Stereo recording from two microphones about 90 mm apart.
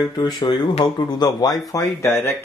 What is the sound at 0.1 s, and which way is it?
Speech, 50° left (ahead or behind).